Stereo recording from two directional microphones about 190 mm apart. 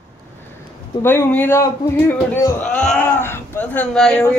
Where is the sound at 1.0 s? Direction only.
10° left (ahead or behind).